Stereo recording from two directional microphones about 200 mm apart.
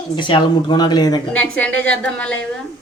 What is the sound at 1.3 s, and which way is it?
A woman's voice, 5° left (ahead or behind).